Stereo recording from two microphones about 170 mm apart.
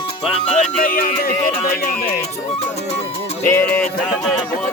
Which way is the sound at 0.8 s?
55° left (ahead or behind).